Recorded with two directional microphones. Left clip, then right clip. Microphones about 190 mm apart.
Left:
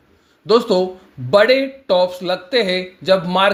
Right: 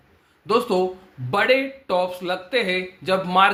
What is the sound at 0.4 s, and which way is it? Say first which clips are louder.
Speech: left 6 dB; 20° left (ahead or behind).